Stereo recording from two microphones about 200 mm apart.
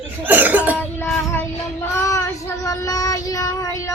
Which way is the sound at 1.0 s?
10° left (ahead or behind).